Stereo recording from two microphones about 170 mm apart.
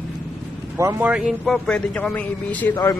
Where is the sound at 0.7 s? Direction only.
15° right (ahead or behind); by 2.7 s 10° left (ahead or behind).